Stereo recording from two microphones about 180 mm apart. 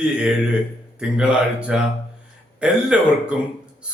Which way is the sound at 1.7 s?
5° right (ahead or behind).